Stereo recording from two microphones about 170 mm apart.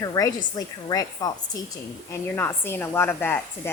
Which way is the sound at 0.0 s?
20° left (ahead or behind).